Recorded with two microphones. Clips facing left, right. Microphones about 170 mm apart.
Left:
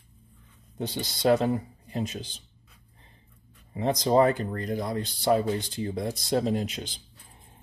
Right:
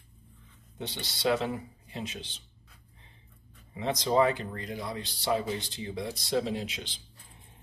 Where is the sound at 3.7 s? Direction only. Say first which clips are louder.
Left 4 dB; 40° left (ahead or behind).